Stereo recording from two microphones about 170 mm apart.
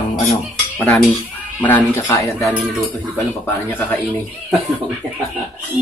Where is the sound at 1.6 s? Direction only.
10° left (ahead or behind).